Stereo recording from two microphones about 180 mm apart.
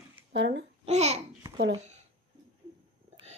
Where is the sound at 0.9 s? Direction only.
35° right (ahead or behind).